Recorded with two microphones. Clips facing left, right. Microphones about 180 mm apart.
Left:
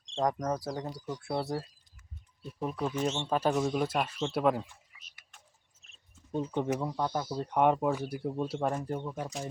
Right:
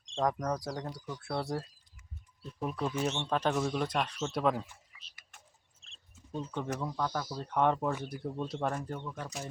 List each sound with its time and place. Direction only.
0.2 s speech: centre (ahead or behind)
1.4 s speech: 5° left (ahead or behind)
5.8 s a sound: 30° right (ahead or behind)
6.3 s speech: 20° left (ahead or behind)
8.7 s speech: 20° left (ahead or behind)